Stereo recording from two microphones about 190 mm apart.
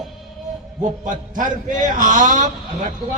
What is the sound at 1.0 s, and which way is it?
A man's voice, 45° right (ahead or behind).